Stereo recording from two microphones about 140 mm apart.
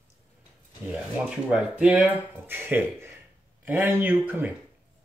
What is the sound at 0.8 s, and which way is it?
Speech, 5° right (ahead or behind).